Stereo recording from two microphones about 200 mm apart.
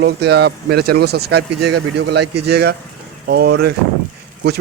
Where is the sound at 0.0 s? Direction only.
55° right (ahead or behind).